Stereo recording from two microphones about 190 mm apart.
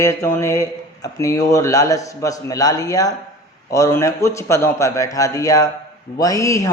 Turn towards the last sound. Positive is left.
turn(degrees=15)  # may be behind; listen again after turning